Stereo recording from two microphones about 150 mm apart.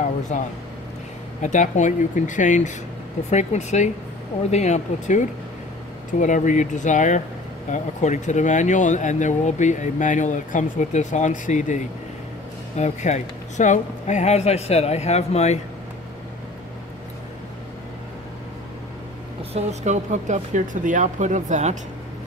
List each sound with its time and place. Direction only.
0.3 s speech: 50° left (ahead or behind)
19.5 s speech: 50° right (ahead or behind)